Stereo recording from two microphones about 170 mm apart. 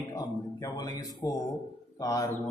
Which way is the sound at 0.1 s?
20° left (ahead or behind).